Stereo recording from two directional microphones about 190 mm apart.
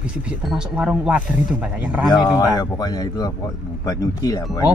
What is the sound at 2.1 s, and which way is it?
Speech, 20° left (ahead or behind).